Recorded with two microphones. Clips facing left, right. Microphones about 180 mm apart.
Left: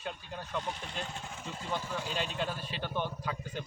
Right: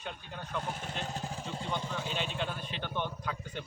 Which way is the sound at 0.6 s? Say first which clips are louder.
Right 1 dB; 45° right (ahead or behind).